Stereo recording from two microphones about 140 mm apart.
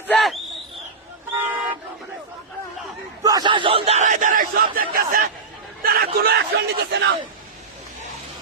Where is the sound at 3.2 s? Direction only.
25° right (ahead or behind); by 6.3 s 90° right.